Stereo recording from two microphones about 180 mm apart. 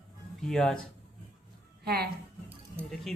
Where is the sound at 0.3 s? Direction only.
Centre (ahead or behind).